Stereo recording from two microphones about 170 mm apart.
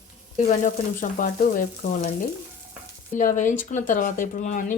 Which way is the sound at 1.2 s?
50° left (ahead or behind).